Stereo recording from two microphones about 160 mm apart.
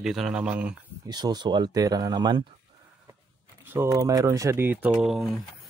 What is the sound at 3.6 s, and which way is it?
Speech, 15° right (ahead or behind).